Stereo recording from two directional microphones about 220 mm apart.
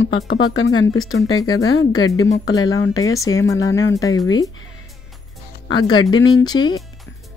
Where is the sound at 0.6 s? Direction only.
70° left (ahead or behind).